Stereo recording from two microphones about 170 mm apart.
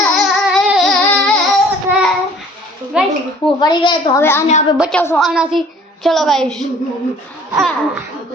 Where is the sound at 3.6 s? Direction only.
25° left (ahead or behind).